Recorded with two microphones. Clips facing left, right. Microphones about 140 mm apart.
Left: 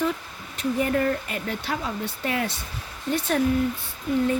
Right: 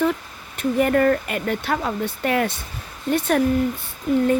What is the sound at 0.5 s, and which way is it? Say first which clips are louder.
Speech: right 5 dB; 60° right (ahead or behind).